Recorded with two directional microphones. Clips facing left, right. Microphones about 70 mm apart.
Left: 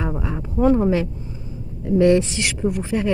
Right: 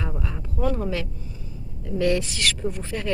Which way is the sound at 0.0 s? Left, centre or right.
Left.